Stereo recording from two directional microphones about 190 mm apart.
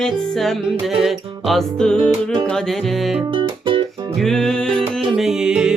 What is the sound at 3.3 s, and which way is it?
Music, 30° right (ahead or behind).